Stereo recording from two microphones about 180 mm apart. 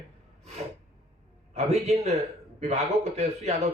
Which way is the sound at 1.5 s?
35° right (ahead or behind).